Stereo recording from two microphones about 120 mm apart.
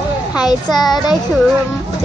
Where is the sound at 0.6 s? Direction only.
35° left (ahead or behind).